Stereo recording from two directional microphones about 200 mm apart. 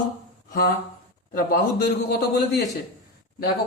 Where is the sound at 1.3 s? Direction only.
50° left (ahead or behind).